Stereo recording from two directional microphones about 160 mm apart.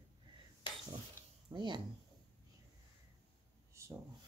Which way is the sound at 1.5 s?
30° right (ahead or behind).